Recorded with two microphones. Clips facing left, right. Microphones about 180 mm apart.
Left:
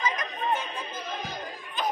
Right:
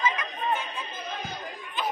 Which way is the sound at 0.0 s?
40° left (ahead or behind).